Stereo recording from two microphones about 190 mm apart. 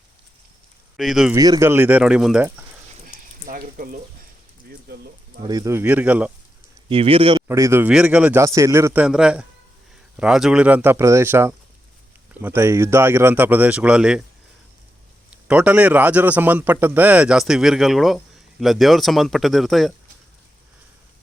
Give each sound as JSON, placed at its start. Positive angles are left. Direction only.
{"t": 0.9, "sound": "speech", "side_deg": 0}
{"t": 1.4, "sound": "a man's voice", "side_deg": -20}
{"t": 3.1, "sound": "a sound", "side_deg": -45}
{"t": 5.5, "sound": "a man's voice", "side_deg": -15}
{"t": 6.8, "sound": "speech", "side_deg": -30}
{"t": 7.4, "sound": "a man's voice", "side_deg": -15}
{"t": 15.3, "sound": "a man's voice", "side_deg": -5}